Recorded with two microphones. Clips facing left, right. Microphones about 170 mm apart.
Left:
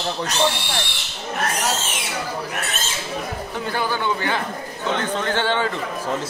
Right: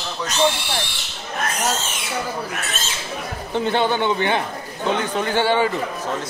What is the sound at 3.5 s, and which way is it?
A man's voice, 25° right (ahead or behind).